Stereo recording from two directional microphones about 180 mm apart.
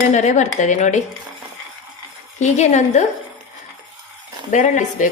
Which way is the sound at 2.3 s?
40° left (ahead or behind).